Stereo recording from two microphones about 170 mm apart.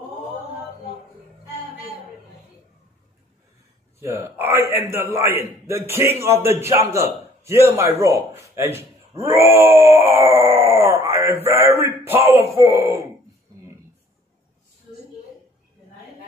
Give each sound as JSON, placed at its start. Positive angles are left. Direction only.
{"t": 4.0, "sound": "a man's voice", "side_deg": -15}